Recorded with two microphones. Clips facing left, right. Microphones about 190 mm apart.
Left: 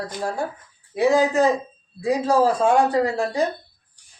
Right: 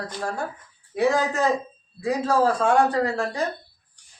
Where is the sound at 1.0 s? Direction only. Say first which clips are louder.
Left 4 dB; 30° left (ahead or behind).